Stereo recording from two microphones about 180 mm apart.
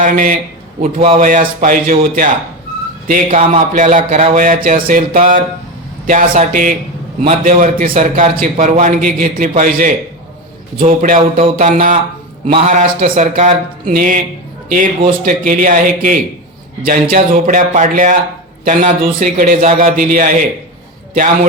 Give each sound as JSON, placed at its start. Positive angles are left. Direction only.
{"t": 0.0, "sound": "a man's voice", "side_deg": -50}
{"t": 0.9, "sound": "speech", "side_deg": -30}
{"t": 1.2, "sound": "a man's voice", "side_deg": -50}